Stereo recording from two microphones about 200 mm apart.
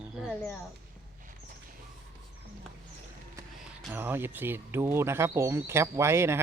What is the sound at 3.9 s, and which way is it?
Speech, 10° right (ahead or behind).